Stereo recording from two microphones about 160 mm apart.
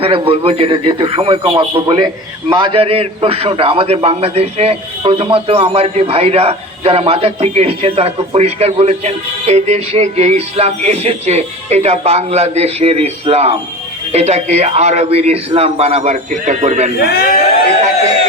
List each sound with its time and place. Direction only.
0.0 s a man's voice: 35° right (ahead or behind)
17.0 s speech: 75° left (ahead or behind)